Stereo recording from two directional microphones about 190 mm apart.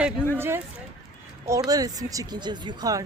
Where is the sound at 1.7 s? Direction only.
20° right (ahead or behind).